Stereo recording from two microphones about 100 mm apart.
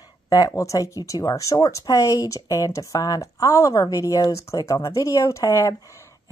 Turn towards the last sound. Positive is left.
turn(degrees=30)  # may be behind; listen again after turning